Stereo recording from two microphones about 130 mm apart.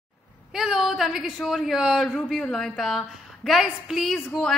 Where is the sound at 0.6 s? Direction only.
Centre (ahead or behind).